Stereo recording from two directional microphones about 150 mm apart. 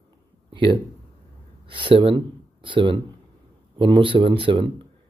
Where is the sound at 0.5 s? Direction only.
35° right (ahead or behind).